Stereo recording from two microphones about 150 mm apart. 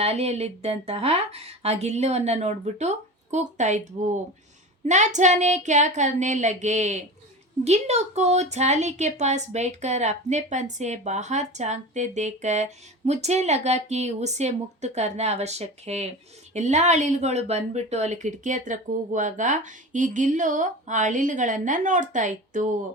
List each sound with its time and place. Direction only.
0.0 s a woman's voice: 45° right (ahead or behind)